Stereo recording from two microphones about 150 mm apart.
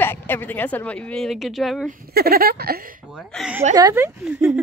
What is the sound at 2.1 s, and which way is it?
Speech, 90° right.